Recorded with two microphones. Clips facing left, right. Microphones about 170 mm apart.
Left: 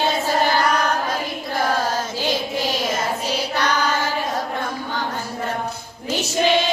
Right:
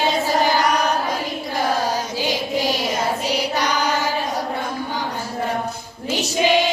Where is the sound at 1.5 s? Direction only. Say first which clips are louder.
Even; 15° right (ahead or behind).